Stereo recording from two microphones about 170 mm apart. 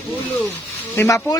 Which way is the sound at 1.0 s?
20° left (ahead or behind).